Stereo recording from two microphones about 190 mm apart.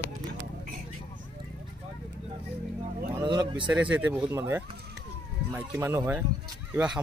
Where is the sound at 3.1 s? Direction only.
25° right (ahead or behind).